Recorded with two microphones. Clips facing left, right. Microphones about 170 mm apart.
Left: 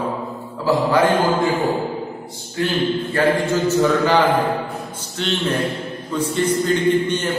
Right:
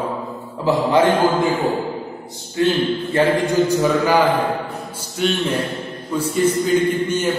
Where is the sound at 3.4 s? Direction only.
15° right (ahead or behind).